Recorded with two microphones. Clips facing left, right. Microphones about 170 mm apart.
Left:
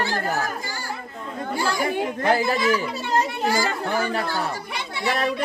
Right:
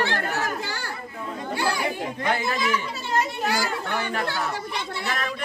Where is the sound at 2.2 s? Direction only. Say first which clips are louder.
Left 4 dB; 35° left (ahead or behind).